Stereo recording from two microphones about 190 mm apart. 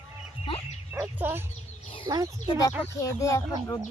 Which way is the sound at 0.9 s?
10° right (ahead or behind).